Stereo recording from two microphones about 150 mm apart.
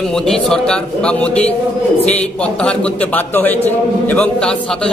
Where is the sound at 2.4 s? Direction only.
10° left (ahead or behind).